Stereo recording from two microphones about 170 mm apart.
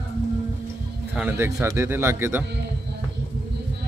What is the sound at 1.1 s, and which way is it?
Speech, 10° right (ahead or behind).